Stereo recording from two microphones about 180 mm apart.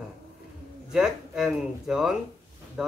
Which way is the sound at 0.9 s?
Centre (ahead or behind).